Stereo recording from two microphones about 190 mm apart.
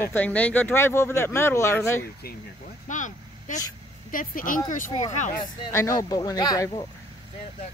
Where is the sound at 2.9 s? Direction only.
40° left (ahead or behind).